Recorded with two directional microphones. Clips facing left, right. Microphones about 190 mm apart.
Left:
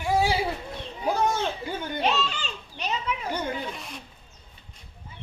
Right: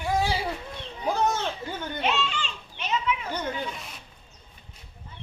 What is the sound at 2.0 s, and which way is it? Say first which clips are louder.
Children playing: left 1 dB; 40° left (ahead or behind).